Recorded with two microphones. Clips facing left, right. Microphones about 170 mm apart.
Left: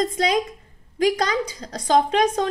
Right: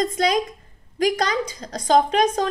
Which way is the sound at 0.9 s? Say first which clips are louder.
Left 1 dB; 30° left (ahead or behind).